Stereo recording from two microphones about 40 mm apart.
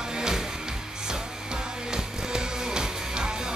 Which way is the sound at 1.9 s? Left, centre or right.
Centre.